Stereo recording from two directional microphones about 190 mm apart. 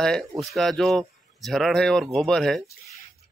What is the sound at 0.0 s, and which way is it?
Speech, centre (ahead or behind).